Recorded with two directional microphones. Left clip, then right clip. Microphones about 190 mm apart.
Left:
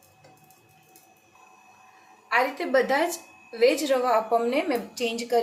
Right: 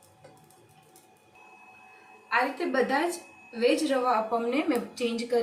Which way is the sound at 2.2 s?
50° left (ahead or behind).